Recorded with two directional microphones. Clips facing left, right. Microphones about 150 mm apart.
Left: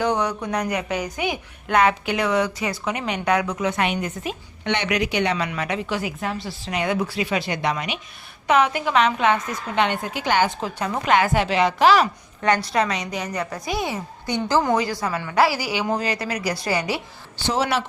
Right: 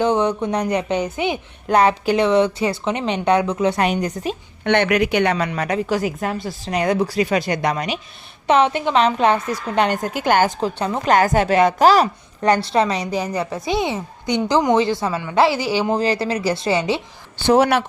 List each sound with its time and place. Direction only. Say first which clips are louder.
0.0 s a woman's voice: right 5 dB; 25° right (ahead or behind)
4.6 s a woman's voice: right 6 dB; 55° right (ahead or behind)
5.5 s a woman's voice: right 5 dB; 40° right (ahead or behind)
8.4 s a woman's voice: right 3 dB; 30° right (ahead or behind); by 10.5 s 45° right (ahead or behind)
10.6 s a woman's voice: right 4 dB; 30° right (ahead or behind)
11.1 s speech: right 4 dB; 40° right (ahead or behind); by 17.0 s 25° right (ahead or behind)
17.3 s speech: right 8 dB; 55° right (ahead or behind)